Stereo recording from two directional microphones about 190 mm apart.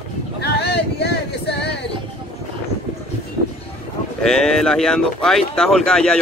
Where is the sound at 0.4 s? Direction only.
60° left (ahead or behind).